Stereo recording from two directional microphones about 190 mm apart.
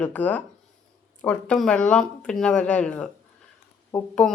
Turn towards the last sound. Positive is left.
turn(degrees=5)  # may be behind; listen again after turning